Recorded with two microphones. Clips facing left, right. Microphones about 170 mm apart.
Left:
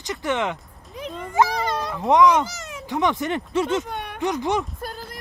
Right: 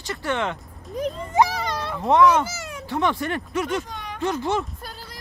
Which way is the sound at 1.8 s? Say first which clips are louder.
Left 1 dB; centre (ahead or behind).